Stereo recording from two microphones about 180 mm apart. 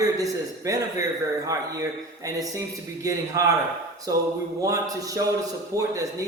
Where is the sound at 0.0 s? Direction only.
20° right (ahead or behind).